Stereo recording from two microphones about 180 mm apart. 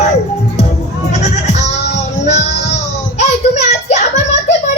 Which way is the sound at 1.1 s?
40° left (ahead or behind).